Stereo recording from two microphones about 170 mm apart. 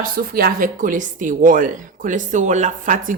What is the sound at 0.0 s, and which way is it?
Speech, 60° right (ahead or behind).